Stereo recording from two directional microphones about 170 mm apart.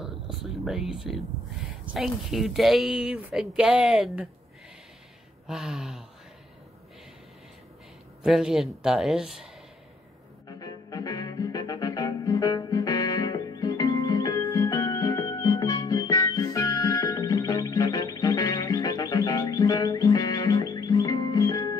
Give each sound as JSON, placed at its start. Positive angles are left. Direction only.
{"t": 0.0, "sound": "a sound", "side_deg": 0}
{"t": 2.0, "sound": "a woman's voice", "side_deg": 0}
{"t": 5.5, "sound": "a woman's voice", "side_deg": -5}
{"t": 8.2, "sound": "a woman's voice", "side_deg": -5}
{"t": 10.6, "sound": "music", "side_deg": 20}